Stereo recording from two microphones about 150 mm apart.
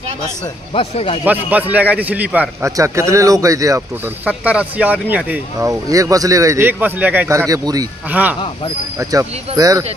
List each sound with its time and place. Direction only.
0.7 s speech: 40° left (ahead or behind)
1.2 s speech: 10° right (ahead or behind)
4.2 s speech: 10° right (ahead or behind)
5.7 s speech: 20° right (ahead or behind)
8.1 s speech: 10° right (ahead or behind)
9.6 s speech: 20° right (ahead or behind)